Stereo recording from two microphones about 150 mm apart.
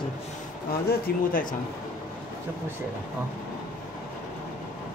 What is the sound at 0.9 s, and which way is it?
Speech, 65° left (ahead or behind).